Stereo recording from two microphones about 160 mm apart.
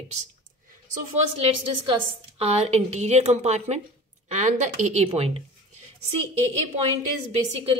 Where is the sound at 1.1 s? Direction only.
35° right (ahead or behind).